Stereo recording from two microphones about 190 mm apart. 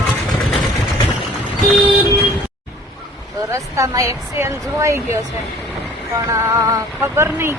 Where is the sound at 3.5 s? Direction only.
15° right (ahead or behind).